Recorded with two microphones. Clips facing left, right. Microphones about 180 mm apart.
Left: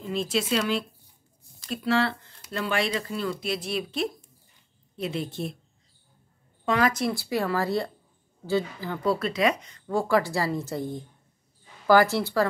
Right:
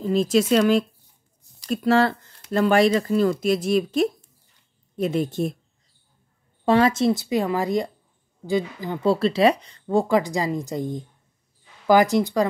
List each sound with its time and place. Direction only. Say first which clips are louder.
0.0 s speech: right 8 dB; 40° right (ahead or behind)
6.6 s speech: right 6 dB; 30° right (ahead or behind)